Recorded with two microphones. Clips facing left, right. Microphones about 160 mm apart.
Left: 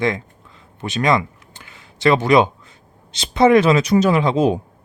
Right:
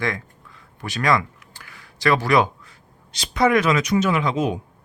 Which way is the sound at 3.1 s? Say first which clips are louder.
Left 6 dB; 25° left (ahead or behind).